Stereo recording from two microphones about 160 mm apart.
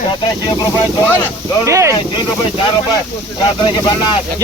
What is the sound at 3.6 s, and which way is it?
Speech, 30° left (ahead or behind).